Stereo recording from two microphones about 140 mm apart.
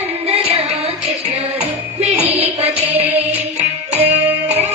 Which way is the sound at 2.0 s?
45° right (ahead or behind).